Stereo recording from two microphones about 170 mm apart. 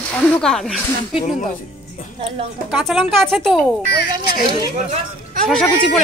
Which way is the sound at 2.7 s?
Centre (ahead or behind).